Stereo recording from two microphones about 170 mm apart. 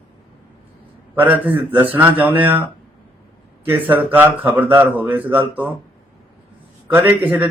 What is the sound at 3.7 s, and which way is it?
Speech, 10° right (ahead or behind).